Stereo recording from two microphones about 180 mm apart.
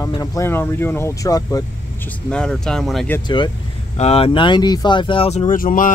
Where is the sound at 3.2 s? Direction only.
25° left (ahead or behind).